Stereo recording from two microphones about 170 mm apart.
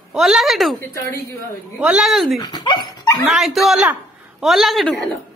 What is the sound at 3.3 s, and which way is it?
A woman's voice, centre (ahead or behind).